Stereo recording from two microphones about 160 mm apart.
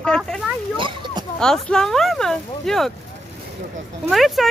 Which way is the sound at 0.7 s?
30° right (ahead or behind).